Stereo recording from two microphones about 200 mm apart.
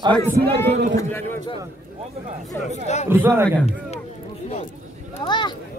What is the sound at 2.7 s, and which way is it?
Speech, 35° left (ahead or behind).